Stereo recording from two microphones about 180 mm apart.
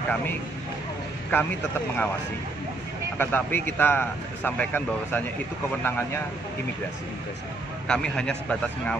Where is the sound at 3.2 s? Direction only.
10° left (ahead or behind).